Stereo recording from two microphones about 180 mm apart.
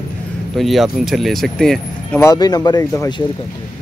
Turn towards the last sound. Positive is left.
turn(degrees=20)  # may be behind; listen again after turning